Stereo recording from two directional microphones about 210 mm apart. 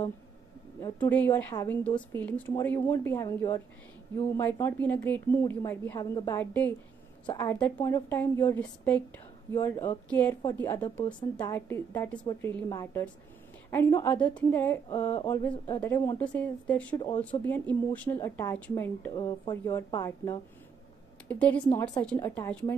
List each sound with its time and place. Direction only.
0.7 s speech: 15° left (ahead or behind)